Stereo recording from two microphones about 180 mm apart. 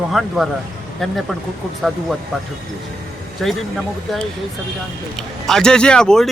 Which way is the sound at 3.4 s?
Centre (ahead or behind).